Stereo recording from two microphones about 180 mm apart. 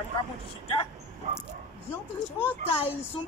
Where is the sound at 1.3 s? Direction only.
40° right (ahead or behind).